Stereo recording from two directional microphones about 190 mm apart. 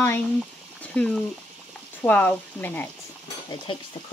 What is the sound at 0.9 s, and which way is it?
Speech, 5° left (ahead or behind).